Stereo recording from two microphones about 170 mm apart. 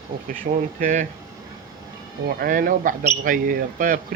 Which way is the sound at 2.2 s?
55° right (ahead or behind).